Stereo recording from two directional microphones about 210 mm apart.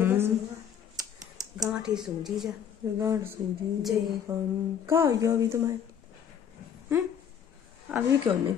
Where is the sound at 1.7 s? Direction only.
5° right (ahead or behind).